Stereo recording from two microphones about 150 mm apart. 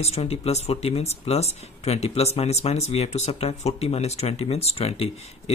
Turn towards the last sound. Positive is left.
turn(degrees=45)  # may be behind; listen again after turning